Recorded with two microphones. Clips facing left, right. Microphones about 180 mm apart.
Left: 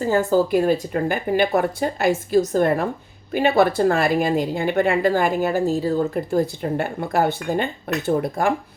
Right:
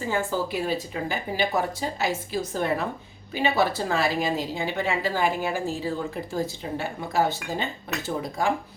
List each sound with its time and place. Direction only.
0.0 s a woman's voice: 40° left (ahead or behind)
6.1 s speech: 55° left (ahead or behind)